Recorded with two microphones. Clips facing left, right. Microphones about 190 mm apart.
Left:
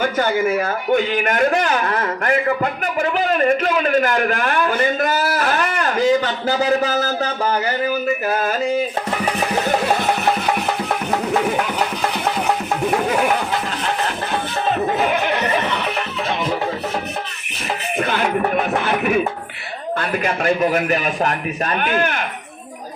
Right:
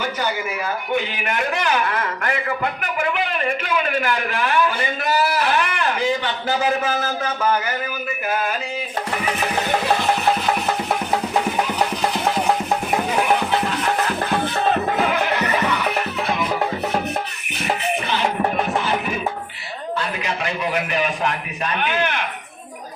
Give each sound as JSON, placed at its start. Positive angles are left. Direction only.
{"t": 0.0, "sound": "speech", "side_deg": 50}
{"t": 15.4, "sound": "music", "side_deg": 25}
{"t": 18.9, "sound": "music", "side_deg": 60}
{"t": 20.0, "sound": "speech", "side_deg": 50}